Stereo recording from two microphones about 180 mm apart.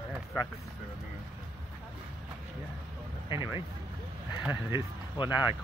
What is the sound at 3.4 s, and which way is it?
Speech, 15° right (ahead or behind).